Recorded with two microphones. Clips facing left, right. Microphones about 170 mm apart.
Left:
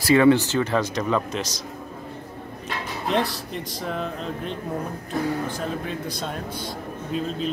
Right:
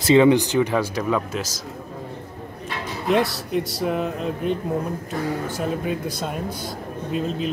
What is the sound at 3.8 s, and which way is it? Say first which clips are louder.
Speech: right 5 dB; 5° right (ahead or behind).